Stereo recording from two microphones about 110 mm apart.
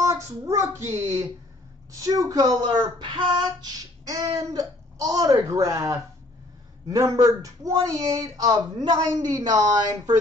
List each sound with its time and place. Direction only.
0.0 s speech: 30° right (ahead or behind)